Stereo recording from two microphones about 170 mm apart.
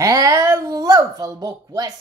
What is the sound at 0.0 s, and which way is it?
Speech, 20° right (ahead or behind).